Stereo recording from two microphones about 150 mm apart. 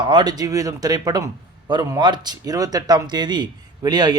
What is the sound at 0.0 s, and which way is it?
A man's voice, 30° right (ahead or behind).